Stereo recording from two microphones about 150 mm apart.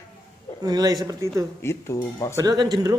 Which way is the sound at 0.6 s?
25° right (ahead or behind).